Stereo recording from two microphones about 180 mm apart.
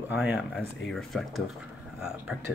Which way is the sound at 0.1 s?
10° right (ahead or behind).